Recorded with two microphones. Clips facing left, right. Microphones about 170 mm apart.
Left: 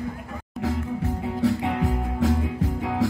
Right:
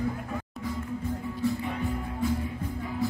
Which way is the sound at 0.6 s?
85° left.